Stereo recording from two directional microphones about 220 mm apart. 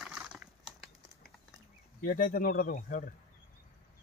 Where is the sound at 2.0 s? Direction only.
40° left (ahead or behind).